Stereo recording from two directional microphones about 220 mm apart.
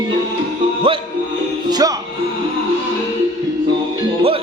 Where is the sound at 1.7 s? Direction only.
15° right (ahead or behind).